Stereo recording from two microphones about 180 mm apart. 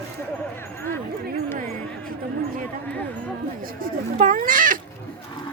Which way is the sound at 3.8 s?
50° right (ahead or behind).